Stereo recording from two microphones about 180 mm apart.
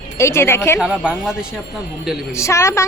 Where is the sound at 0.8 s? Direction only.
5° right (ahead or behind).